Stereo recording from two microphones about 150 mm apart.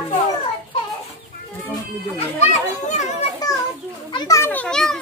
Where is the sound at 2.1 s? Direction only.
45° left (ahead or behind).